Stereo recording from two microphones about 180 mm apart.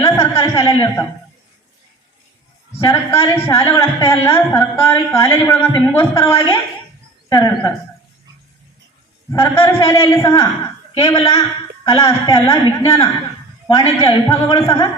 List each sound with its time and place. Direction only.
0.0 s a sound: 20° left (ahead or behind)
2.8 s a woman's voice: 15° left (ahead or behind)
9.3 s a woman's voice: 15° left (ahead or behind)